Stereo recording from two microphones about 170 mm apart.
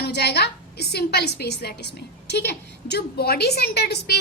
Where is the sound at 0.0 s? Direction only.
75° left (ahead or behind).